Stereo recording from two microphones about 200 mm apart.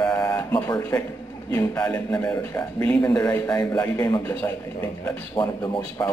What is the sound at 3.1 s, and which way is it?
A man's voice, 20° left (ahead or behind).